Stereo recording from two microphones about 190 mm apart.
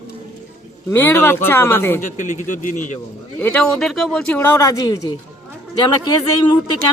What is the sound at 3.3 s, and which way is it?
Speech, 5° left (ahead or behind).